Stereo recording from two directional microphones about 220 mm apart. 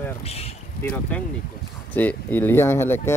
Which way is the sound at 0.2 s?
25° left (ahead or behind).